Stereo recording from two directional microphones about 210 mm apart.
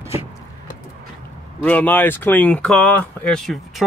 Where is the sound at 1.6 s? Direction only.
5° left (ahead or behind).